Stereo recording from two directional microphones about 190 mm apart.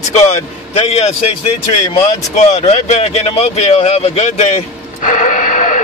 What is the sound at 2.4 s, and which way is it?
Speech, 35° left (ahead or behind).